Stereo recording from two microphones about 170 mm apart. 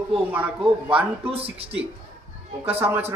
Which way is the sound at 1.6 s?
35° right (ahead or behind).